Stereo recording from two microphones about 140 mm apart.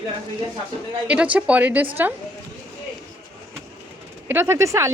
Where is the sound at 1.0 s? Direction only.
10° right (ahead or behind).